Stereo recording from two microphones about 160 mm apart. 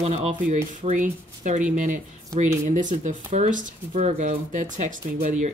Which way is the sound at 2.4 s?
50° right (ahead or behind).